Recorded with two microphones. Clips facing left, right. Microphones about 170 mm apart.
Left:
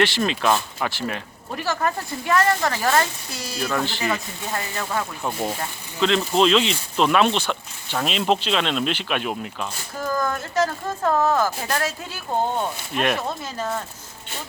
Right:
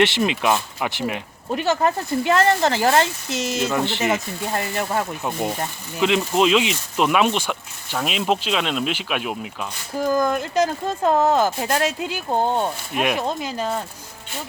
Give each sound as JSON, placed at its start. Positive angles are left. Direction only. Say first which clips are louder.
{"t": 0.0, "sound": "speech", "louder": "right 2 dB", "side_deg": -20}
{"t": 6.0, "sound": "speech", "louder": "even", "side_deg": -10}
{"t": 10.1, "sound": "speech", "louder": "right 5 dB", "side_deg": -20}